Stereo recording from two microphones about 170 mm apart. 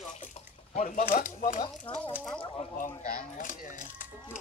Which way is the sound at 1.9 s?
30° left (ahead or behind).